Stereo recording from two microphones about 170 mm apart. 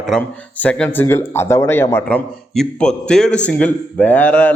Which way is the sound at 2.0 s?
5° left (ahead or behind).